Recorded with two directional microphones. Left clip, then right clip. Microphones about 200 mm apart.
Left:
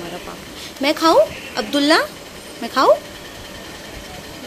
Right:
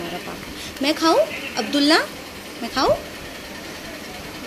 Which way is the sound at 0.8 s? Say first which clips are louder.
Left 4 dB; 15° left (ahead or behind).